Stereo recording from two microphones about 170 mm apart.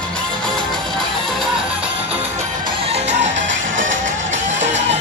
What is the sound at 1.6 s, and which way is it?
Music, 35° right (ahead or behind).